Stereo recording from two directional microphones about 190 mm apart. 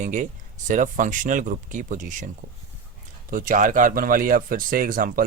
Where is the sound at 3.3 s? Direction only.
45° right (ahead or behind).